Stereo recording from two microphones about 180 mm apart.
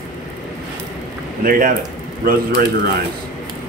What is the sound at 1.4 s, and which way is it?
Speech, 50° right (ahead or behind).